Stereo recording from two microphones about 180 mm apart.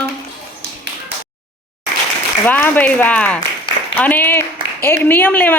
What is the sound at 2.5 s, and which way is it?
A woman's voice, 10° left (ahead or behind).